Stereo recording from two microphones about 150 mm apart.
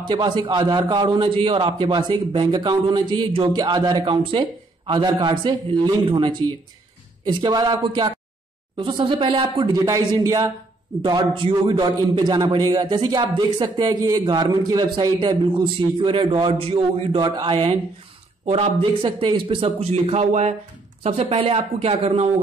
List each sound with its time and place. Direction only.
0.0 s a man's voice: 30° right (ahead or behind)